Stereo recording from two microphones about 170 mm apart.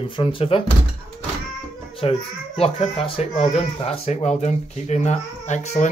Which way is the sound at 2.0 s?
35° left (ahead or behind).